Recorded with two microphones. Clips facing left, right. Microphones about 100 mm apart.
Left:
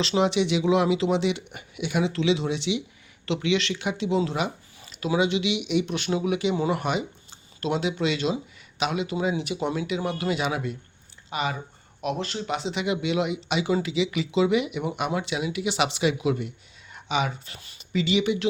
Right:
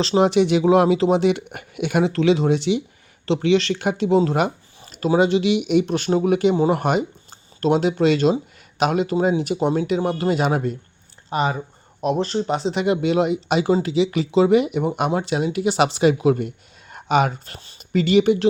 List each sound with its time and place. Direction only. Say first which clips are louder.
0.0 s speech: right 6 dB; 40° right (ahead or behind)
17.6 s speech: right 3 dB; 30° right (ahead or behind)
17.9 s speech: right 7 dB; 45° right (ahead or behind)